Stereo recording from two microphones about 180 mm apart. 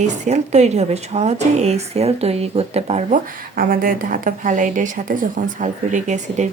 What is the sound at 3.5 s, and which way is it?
Speech, 50° right (ahead or behind).